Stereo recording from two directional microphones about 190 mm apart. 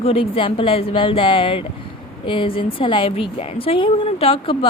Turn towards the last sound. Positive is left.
turn(degrees=30)  # may be behind; listen again after turning